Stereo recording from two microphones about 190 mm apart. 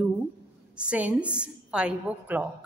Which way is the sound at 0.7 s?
5° right (ahead or behind).